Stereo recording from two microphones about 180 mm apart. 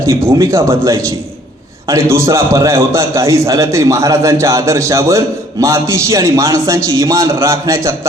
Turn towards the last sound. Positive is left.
turn(degrees=-15)  # may be behind; listen again after turning